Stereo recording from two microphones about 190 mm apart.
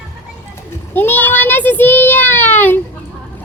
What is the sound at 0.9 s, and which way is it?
A child's voice, 10° left (ahead or behind).